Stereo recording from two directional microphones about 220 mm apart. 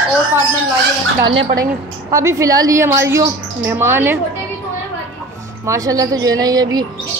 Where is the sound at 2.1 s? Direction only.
15° right (ahead or behind).